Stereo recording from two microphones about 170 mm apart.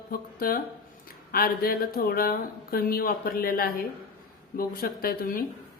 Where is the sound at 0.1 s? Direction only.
60° left (ahead or behind).